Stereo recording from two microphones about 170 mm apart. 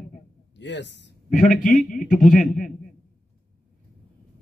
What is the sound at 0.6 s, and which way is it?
Speech, 90° left.